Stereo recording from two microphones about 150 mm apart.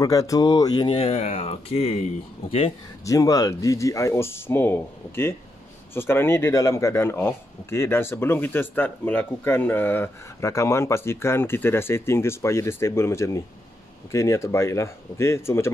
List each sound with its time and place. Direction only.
0.0 s speech: 20° left (ahead or behind)
1.1 s speech: 50° left (ahead or behind)
3.1 s speech: 25° left (ahead or behind)